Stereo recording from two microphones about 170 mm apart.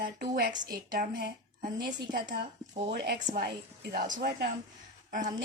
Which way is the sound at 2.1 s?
70° right (ahead or behind).